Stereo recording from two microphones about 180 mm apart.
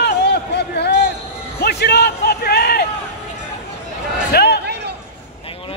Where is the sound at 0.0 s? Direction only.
70° left (ahead or behind).